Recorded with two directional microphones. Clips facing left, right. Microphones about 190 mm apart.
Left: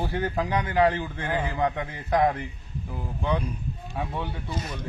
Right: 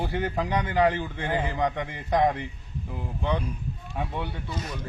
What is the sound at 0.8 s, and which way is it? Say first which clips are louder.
Speech: even; 15° right (ahead or behind).